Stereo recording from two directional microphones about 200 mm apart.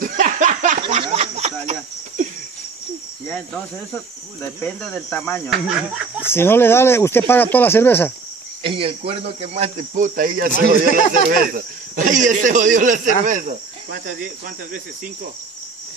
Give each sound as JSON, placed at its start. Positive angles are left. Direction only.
{"t": 0.0, "sound": "a sound", "side_deg": -40}
{"t": 3.3, "sound": "cricket", "side_deg": 5}
{"t": 4.6, "sound": "speech", "side_deg": 5}
{"t": 5.8, "sound": "cricket", "side_deg": -5}
{"t": 6.2, "sound": "speech", "side_deg": 10}
{"t": 8.6, "sound": "speech", "side_deg": -25}